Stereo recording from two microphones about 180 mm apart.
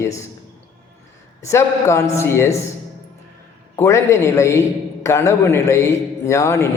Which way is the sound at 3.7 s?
15° left (ahead or behind).